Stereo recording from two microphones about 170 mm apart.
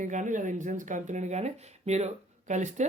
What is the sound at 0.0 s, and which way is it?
Speech, 45° right (ahead or behind).